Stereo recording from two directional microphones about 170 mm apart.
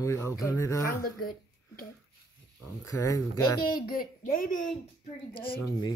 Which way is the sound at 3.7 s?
55° left (ahead or behind).